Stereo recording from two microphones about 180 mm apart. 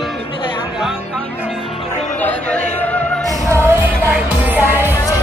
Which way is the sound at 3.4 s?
15° right (ahead or behind).